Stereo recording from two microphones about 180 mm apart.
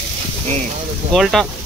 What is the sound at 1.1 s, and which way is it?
Speech, centre (ahead or behind).